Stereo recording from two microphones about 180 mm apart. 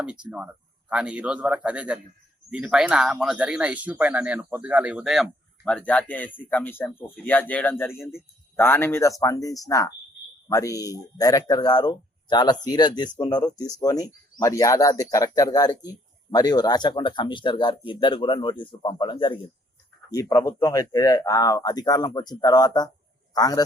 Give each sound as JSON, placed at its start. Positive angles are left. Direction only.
{"t": 0.0, "sound": "speech", "side_deg": -5}